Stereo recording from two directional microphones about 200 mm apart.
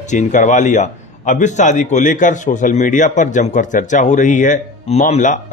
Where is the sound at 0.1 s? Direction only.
40° left (ahead or behind).